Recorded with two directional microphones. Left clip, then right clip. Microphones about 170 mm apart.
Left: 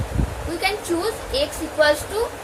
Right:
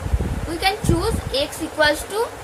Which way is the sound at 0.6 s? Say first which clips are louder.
Right 3 dB; 25° right (ahead or behind).